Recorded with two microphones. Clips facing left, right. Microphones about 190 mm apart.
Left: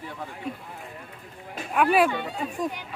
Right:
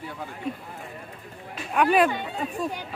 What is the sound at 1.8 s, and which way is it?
Speech, 5° left (ahead or behind).